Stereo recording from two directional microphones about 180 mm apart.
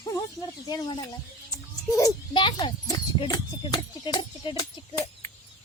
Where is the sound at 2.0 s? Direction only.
25° left (ahead or behind).